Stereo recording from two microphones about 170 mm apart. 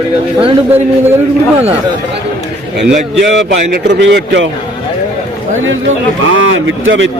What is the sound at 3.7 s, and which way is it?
Speech, 90° right.